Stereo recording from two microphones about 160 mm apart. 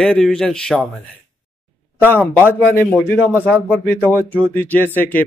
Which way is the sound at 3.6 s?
10° left (ahead or behind).